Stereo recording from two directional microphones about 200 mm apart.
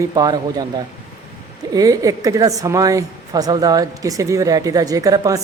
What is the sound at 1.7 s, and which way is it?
A man's voice, 15° right (ahead or behind).